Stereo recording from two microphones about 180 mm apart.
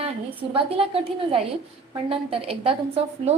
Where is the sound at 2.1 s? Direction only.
30° right (ahead or behind).